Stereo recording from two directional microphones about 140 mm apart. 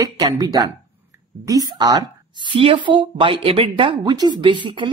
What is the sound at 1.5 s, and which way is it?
Speech, 30° right (ahead or behind).